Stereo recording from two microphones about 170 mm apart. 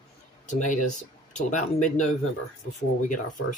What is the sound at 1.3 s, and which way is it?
Speech, 45° left (ahead or behind).